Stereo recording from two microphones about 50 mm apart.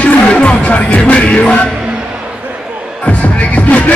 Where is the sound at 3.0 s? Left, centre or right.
Left.